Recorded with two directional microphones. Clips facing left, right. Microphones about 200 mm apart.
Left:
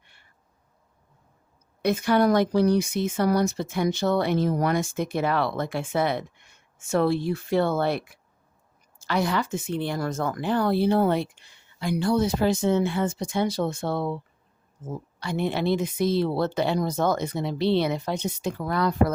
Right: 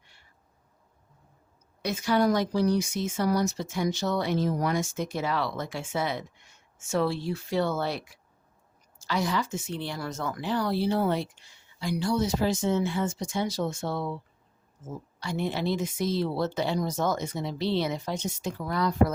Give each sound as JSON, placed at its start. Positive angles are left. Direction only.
{"t": 0.0, "sound": "cat", "side_deg": 55}
{"t": 1.8, "sound": "speech", "side_deg": 55}